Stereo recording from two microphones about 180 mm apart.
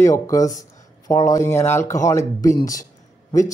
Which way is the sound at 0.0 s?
15° left (ahead or behind).